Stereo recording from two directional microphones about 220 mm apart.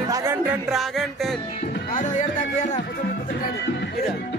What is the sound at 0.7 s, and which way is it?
Music, centre (ahead or behind).